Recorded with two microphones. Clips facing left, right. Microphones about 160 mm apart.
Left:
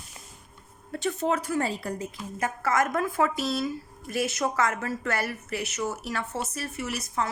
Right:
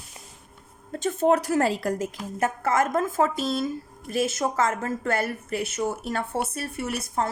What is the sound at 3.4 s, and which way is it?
Speech, 50° right (ahead or behind).